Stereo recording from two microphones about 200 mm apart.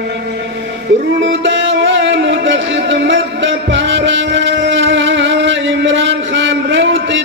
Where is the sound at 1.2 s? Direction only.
65° right (ahead or behind).